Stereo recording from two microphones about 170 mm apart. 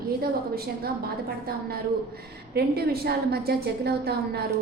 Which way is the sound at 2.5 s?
70° right (ahead or behind).